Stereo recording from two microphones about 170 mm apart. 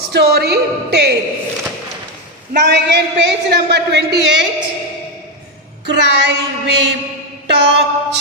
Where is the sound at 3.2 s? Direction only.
90° right.